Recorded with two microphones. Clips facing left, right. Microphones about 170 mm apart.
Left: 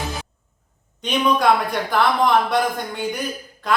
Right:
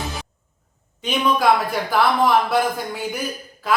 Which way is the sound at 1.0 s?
5° right (ahead or behind).